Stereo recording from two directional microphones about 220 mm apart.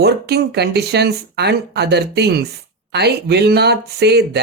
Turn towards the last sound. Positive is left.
turn(degrees=-50)  # may be behind; listen again after turning